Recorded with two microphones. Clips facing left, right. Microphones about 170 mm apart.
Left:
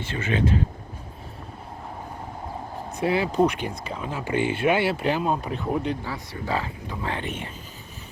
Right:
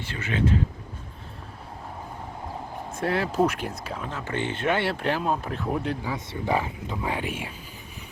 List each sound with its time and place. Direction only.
0.0 s speech: 25° left (ahead or behind)
2.9 s speech: centre (ahead or behind)
4.1 s speech: 10° left (ahead or behind)
6.1 s speech: 20° right (ahead or behind)